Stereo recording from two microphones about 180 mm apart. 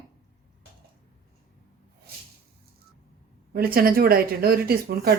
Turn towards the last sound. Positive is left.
turn(degrees=-60)  # may be behind; listen again after turning